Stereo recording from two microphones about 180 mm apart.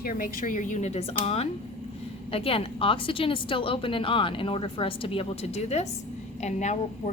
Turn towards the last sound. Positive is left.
turn(degrees=40)  # may be behind; listen again after turning